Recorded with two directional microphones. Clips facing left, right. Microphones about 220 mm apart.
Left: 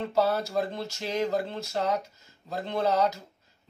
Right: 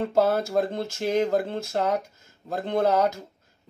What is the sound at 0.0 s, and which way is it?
A man's voice, 50° right (ahead or behind).